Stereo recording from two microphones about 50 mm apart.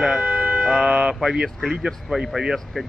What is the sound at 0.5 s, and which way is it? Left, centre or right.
Speech, centre.